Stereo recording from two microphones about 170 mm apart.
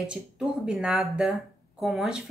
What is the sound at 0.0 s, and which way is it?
Speech, 5° right (ahead or behind).